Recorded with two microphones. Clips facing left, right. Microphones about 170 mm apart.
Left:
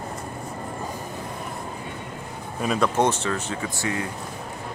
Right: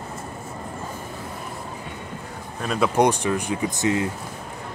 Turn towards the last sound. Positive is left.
turn(degrees=-20)  # may be behind; listen again after turning